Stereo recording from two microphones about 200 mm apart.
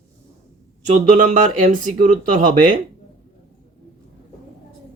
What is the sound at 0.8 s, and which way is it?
Speech, 40° right (ahead or behind).